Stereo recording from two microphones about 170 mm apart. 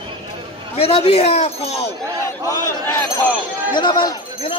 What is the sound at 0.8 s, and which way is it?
Speech, 35° left (ahead or behind).